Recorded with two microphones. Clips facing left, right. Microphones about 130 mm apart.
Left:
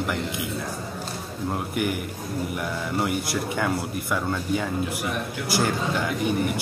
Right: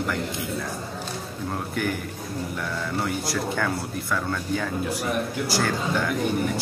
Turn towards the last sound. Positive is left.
turn(degrees=15)  # may be behind; listen again after turning